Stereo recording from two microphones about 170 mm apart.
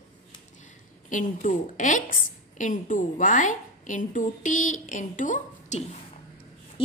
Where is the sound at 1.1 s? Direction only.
50° left (ahead or behind).